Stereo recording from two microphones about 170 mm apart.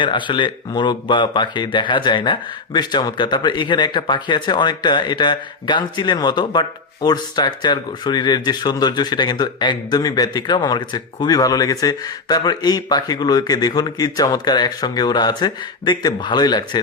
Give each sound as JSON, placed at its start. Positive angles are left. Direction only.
{"t": 0.0, "sound": "speech", "side_deg": 30}